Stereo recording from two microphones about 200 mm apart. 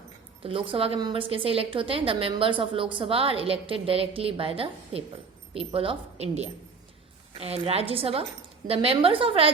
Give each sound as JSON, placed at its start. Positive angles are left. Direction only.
{"t": 0.4, "sound": "a woman's voice", "side_deg": -25}